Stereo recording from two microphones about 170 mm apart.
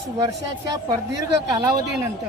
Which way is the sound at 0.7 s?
20° right (ahead or behind).